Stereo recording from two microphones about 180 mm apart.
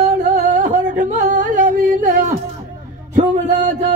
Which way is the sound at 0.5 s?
45° right (ahead or behind).